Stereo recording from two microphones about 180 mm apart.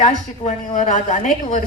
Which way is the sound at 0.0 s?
40° left (ahead or behind).